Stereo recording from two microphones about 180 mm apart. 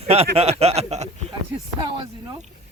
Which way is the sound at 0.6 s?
35° right (ahead or behind).